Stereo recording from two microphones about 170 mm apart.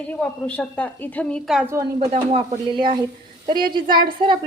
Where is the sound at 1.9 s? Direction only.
40° right (ahead or behind).